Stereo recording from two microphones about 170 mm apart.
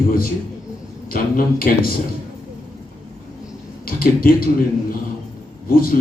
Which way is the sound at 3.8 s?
60° left (ahead or behind).